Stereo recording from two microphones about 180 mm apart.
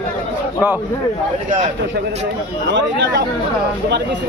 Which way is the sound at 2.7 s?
75° right (ahead or behind).